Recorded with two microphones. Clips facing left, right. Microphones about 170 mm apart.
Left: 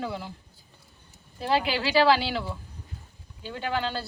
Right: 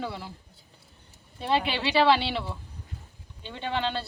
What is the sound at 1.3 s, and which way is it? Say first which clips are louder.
Speech: left 1 dB; centre (ahead or behind).